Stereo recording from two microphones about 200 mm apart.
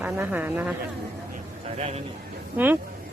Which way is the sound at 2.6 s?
10° right (ahead or behind).